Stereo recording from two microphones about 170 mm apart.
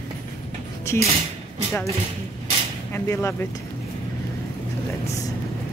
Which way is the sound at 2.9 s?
15° left (ahead or behind).